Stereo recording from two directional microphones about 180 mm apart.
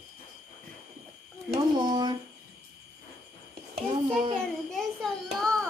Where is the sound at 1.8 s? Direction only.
25° right (ahead or behind).